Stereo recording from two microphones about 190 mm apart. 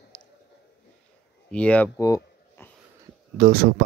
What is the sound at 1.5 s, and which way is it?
Speech, 5° left (ahead or behind).